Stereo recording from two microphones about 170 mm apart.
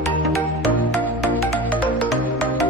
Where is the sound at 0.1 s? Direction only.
Centre (ahead or behind).